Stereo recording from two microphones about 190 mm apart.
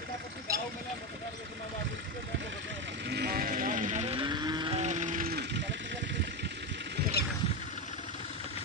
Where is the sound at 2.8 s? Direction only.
60° right (ahead or behind).